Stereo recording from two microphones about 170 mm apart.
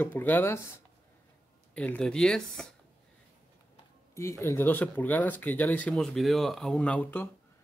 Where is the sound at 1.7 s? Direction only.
10° left (ahead or behind).